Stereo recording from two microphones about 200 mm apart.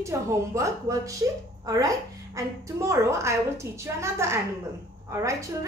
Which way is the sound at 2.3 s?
15° right (ahead or behind).